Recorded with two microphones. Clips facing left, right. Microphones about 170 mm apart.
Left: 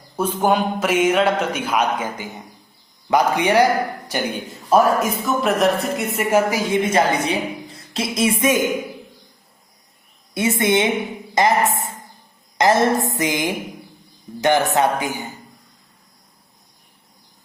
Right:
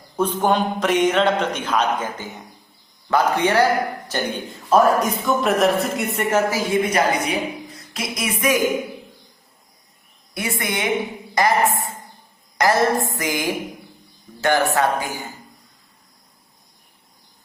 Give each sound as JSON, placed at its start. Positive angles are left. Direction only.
{"t": 0.2, "sound": "a man's voice", "side_deg": 10}
{"t": 6.3, "sound": "speech", "side_deg": 20}
{"t": 10.3, "sound": "a woman's voice", "side_deg": 25}